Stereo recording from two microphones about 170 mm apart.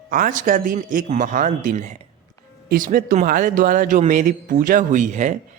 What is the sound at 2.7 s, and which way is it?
Speech, 55° right (ahead or behind).